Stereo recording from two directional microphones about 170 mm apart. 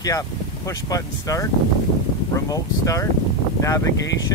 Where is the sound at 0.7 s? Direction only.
20° left (ahead or behind).